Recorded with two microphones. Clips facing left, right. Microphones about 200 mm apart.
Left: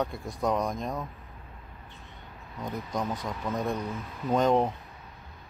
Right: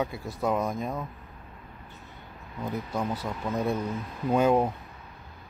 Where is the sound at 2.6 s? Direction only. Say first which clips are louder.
Right 1 dB; 5° right (ahead or behind).